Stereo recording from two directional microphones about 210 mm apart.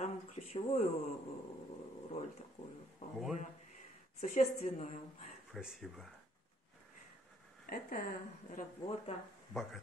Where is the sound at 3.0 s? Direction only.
35° left (ahead or behind).